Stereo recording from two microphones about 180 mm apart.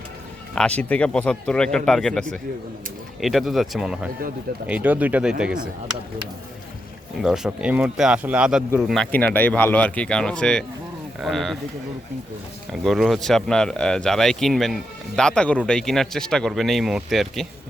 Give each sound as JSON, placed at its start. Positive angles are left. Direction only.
{"t": 0.5, "sound": "speech", "side_deg": 5}
{"t": 7.2, "sound": "speech", "side_deg": -5}
{"t": 12.8, "sound": "speech", "side_deg": 0}